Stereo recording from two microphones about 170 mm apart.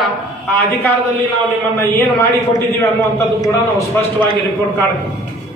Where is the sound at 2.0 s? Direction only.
20° left (ahead or behind).